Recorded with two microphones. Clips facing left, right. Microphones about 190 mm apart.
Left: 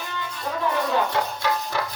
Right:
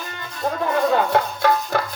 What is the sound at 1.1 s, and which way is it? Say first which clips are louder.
Music: right 6 dB; 55° right (ahead or behind).